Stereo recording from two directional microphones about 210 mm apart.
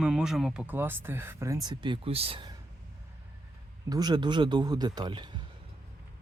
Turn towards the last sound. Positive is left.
turn(degrees=-20)  # may be behind; listen again after turning